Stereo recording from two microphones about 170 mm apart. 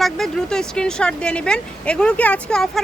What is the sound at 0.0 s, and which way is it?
Speech, centre (ahead or behind).